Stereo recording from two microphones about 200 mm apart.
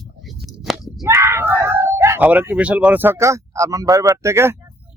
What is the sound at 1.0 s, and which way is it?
Speech, 15° right (ahead or behind).